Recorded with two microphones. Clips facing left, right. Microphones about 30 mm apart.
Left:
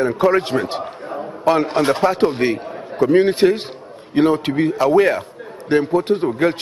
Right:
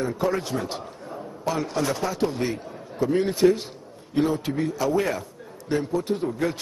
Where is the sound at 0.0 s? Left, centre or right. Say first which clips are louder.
Left 9 dB; left.